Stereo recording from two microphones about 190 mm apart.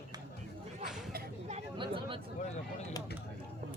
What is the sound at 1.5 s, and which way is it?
Speech, 30° right (ahead or behind).